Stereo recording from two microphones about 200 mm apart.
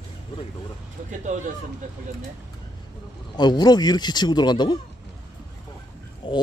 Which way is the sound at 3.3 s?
20° left (ahead or behind).